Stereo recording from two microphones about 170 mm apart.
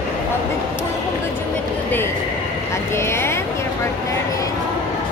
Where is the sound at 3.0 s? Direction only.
15° left (ahead or behind).